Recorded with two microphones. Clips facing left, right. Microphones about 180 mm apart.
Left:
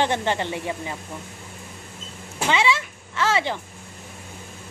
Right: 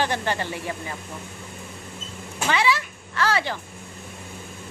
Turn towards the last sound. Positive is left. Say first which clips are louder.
# left 1 dB
turn(degrees=20)  # may be behind; listen again after turning